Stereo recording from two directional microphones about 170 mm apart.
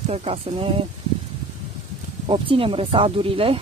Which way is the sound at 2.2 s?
30° right (ahead or behind).